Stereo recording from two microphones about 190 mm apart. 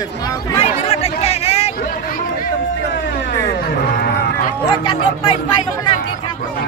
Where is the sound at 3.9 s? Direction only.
55° left (ahead or behind).